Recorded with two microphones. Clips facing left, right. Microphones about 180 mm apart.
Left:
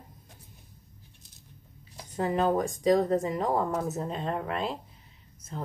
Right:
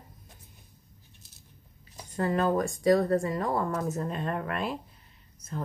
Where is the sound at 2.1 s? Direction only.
20° left (ahead or behind).